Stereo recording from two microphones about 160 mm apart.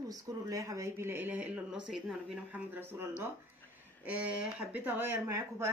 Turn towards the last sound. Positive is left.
turn(degrees=-15)  # may be behind; listen again after turning